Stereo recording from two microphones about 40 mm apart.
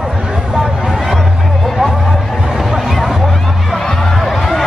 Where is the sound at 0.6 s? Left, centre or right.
Centre.